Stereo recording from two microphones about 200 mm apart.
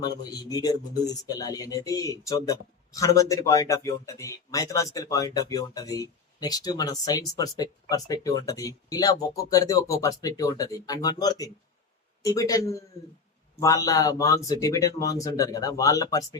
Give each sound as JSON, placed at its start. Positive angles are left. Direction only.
{"t": 0.5, "sound": "speech", "side_deg": 20}